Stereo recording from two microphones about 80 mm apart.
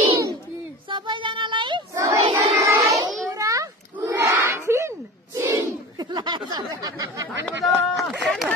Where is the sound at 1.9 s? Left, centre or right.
Right.